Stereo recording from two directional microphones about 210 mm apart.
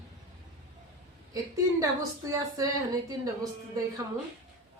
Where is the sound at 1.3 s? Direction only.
15° right (ahead or behind).